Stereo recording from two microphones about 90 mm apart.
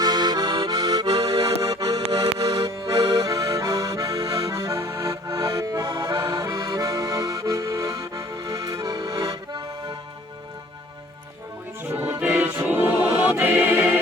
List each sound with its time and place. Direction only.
0.0 s accordion: 50° right (ahead or behind)
11.8 s music: 25° right (ahead or behind)
12.3 s choir: 30° right (ahead or behind)